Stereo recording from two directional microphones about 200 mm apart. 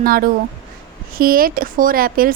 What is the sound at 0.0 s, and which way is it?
Speech, 45° right (ahead or behind).